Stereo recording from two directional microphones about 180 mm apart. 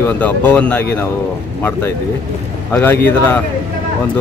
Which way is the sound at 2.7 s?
10° left (ahead or behind).